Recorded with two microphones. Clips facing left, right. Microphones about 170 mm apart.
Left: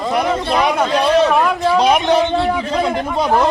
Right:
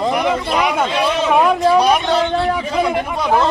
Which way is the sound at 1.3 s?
10° right (ahead or behind).